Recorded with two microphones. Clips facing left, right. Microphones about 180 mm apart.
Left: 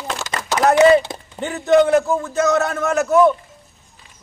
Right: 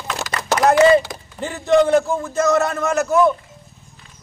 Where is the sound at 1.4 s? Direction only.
Centre (ahead or behind).